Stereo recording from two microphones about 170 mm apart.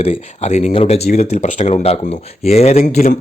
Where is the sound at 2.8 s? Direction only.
55° left (ahead or behind).